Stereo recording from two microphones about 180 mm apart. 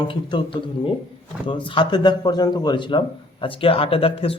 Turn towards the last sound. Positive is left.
turn(degrees=30)  # may be behind; listen again after turning